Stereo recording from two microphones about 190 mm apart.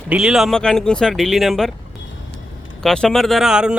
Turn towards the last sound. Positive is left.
turn(degrees=-5)  # may be behind; listen again after turning